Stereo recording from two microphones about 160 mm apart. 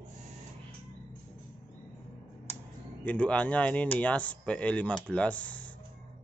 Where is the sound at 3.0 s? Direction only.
10° left (ahead or behind).